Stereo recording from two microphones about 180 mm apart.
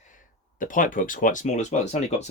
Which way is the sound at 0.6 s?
50° left (ahead or behind).